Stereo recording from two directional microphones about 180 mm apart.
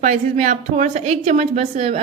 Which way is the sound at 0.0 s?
40° right (ahead or behind).